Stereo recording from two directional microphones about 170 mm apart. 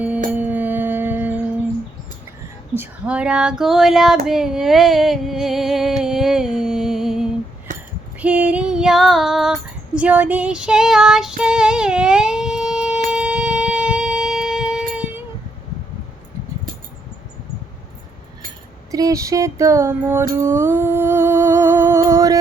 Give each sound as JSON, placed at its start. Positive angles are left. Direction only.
{"t": 0.3, "sound": "music", "side_deg": -10}
{"t": 2.7, "sound": "speech", "side_deg": -10}
{"t": 6.0, "sound": "music", "side_deg": 0}
{"t": 8.2, "sound": "female singing", "side_deg": -10}
{"t": 13.1, "sound": "shofar", "side_deg": -5}
{"t": 18.9, "sound": "a sound", "side_deg": -20}
{"t": 20.3, "sound": "humming", "side_deg": -15}